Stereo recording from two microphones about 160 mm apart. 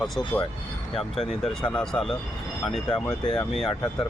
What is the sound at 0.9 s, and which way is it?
Speech, centre (ahead or behind).